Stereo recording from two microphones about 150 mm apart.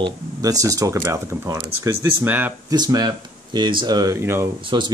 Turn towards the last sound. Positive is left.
turn(degrees=-30)  # may be behind; listen again after turning